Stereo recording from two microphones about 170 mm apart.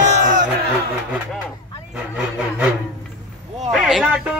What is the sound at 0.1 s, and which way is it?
Crowd, 45° right (ahead or behind).